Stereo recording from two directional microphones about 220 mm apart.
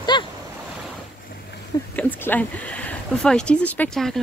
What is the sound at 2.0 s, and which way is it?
Speech, 10° left (ahead or behind).